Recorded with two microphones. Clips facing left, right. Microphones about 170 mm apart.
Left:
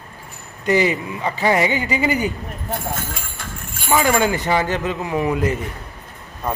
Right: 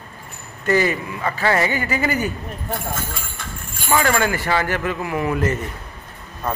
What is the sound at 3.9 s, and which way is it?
Speech, 15° left (ahead or behind).